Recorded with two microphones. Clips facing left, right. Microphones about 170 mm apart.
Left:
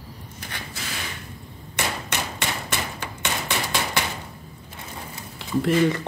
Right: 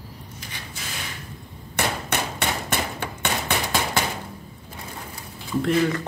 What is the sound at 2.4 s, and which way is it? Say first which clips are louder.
Hammer: right 3 dB; 60° right (ahead or behind).